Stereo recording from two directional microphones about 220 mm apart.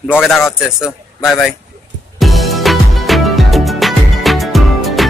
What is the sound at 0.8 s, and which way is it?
Speech, centre (ahead or behind).